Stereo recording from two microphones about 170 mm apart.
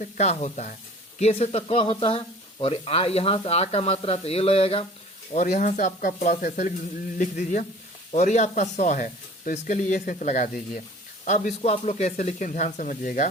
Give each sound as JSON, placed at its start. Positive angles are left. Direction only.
{"t": 0.0, "sound": "speech", "side_deg": 40}
{"t": 5.3, "sound": "speech", "side_deg": 45}